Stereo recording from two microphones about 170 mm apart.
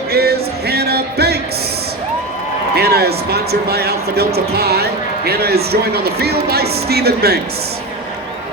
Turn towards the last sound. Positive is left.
turn(degrees=-70)  # may be behind; listen again after turning